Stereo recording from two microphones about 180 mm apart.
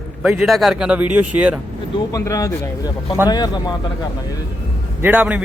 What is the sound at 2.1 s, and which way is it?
Speech, 20° left (ahead or behind).